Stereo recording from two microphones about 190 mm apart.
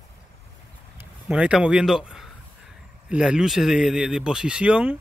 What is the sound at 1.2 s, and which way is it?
Speech, 5° right (ahead or behind).